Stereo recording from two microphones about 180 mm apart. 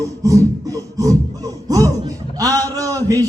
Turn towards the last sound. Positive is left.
turn(degrees=-20)  # may be behind; listen again after turning